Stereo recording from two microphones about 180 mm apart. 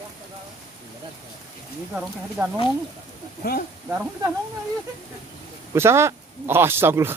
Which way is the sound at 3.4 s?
55° left (ahead or behind).